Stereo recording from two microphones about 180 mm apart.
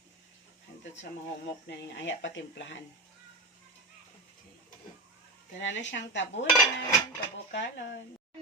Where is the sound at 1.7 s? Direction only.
80° left.